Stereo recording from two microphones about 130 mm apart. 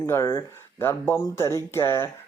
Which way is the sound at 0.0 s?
25° left (ahead or behind).